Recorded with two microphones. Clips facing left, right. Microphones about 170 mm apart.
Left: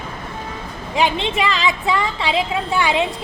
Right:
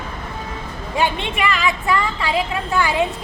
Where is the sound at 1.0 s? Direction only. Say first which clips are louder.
Left 2 dB; 25° left (ahead or behind).